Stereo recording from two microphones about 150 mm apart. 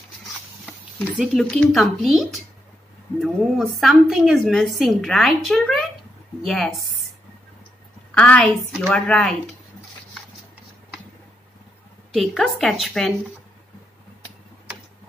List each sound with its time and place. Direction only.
1.1 s a woman's voice: centre (ahead or behind)
8.1 s a woman's voice: 10° left (ahead or behind)
12.1 s a woman's voice: centre (ahead or behind)